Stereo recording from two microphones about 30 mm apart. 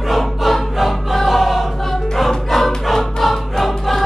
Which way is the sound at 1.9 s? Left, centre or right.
Centre.